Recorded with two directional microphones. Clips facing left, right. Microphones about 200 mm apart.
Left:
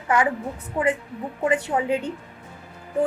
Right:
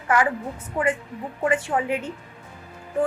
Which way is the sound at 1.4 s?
20° left (ahead or behind).